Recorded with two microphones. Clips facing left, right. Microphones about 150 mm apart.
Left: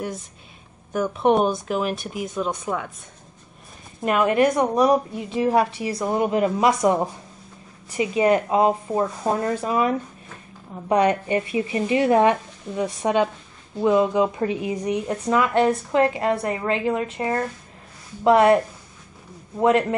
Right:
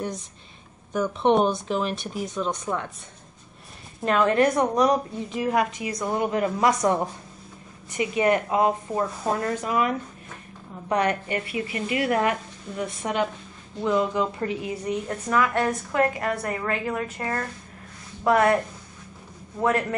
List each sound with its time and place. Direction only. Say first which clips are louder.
0.9 s speech: left 1 dB; 5° left (ahead or behind)
4.0 s a woman's voice: left 2 dB; 10° left (ahead or behind); by 5.9 s 30° left (ahead or behind)
6.0 s a woman's voice: left 3 dB; 20° left (ahead or behind)
19.6 s a woman's voice: left 5 dB; 20° left (ahead or behind)